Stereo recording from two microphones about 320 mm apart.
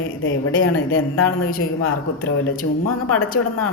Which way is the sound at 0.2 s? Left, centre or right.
Left.